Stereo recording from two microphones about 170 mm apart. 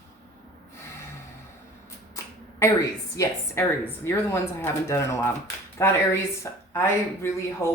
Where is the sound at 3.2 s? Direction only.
20° left (ahead or behind).